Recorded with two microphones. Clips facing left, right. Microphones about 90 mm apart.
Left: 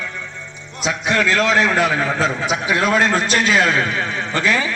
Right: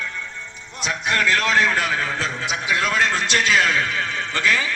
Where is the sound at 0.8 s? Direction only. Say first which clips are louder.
Left 4 dB; 20° left (ahead or behind).